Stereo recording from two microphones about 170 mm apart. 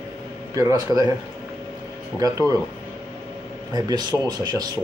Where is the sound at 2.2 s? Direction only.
20° right (ahead or behind).